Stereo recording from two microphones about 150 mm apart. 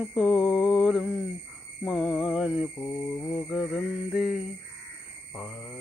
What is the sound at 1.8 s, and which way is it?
Music, centre (ahead or behind).